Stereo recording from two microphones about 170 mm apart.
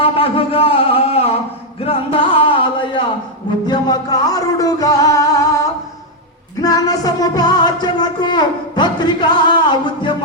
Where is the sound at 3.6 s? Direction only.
25° left (ahead or behind).